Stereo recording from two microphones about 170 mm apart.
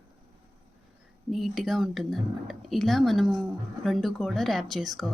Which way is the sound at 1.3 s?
Centre (ahead or behind).